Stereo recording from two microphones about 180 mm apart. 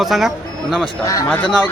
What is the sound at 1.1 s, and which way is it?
Speech, 15° left (ahead or behind).